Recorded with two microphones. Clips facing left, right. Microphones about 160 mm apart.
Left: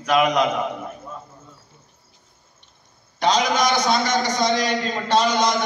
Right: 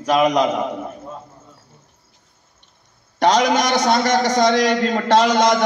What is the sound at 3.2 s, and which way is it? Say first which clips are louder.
A man's voice: right 4 dB; 70° right (ahead or behind).